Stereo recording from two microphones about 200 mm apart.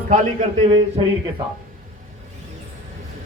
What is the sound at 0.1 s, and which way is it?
Speech, 35° right (ahead or behind).